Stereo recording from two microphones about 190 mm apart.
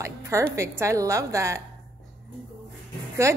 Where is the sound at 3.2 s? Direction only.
15° right (ahead or behind).